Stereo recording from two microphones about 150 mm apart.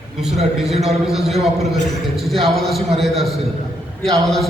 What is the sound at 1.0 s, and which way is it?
A man's voice, centre (ahead or behind).